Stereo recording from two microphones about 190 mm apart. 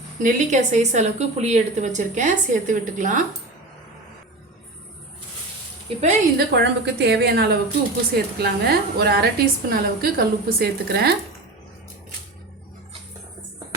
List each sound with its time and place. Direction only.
0.2 s a woman's voice: 45° right (ahead or behind)
5.9 s a woman's voice: 30° right (ahead or behind)
6.3 s a woman's voice: 60° right (ahead or behind)